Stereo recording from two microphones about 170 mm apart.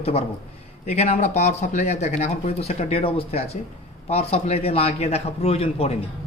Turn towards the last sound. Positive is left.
turn(degrees=35)  # may be behind; listen again after turning